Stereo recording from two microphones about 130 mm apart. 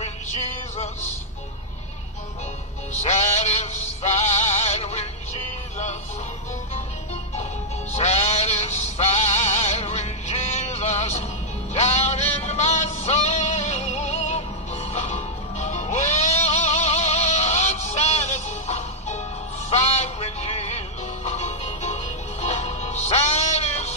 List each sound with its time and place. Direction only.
0.0 s music: 55° left (ahead or behind)
3.0 s music: 60° left (ahead or behind)
7.9 s music: 60° left (ahead or behind)